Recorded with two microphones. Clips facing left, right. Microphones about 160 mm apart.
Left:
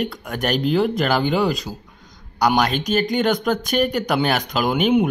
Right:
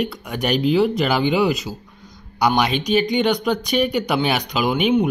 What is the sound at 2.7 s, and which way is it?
Speech, 45° left (ahead or behind).